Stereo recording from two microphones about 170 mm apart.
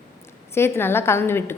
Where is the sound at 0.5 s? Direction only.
15° left (ahead or behind).